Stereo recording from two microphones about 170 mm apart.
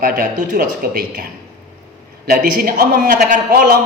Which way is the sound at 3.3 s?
60° right (ahead or behind).